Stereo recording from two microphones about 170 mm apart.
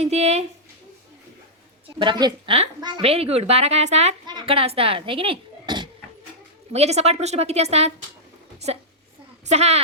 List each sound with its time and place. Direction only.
0.0 s a child's voice: 40° right (ahead or behind)
2.0 s a woman's voice: 25° right (ahead or behind)
6.7 s a child's voice: 40° right (ahead or behind)
9.5 s a child's voice: 40° right (ahead or behind)